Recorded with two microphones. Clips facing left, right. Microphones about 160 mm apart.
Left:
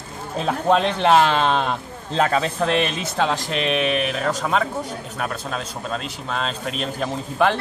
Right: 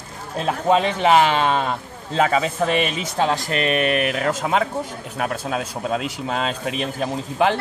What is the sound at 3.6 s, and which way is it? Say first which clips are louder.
Speech: right 1 dB; 50° right (ahead or behind).